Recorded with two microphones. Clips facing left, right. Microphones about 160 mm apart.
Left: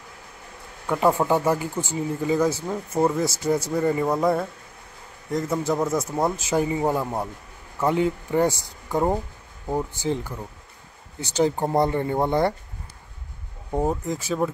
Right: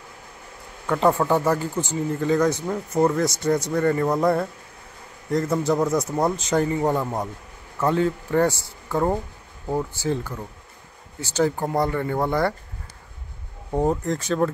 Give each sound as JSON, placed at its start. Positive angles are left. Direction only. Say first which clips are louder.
{"t": 0.8, "sound": "a man's voice", "louder": "right 1 dB", "side_deg": 10}
{"t": 13.7, "sound": "a man's voice", "louder": "right 2 dB", "side_deg": 5}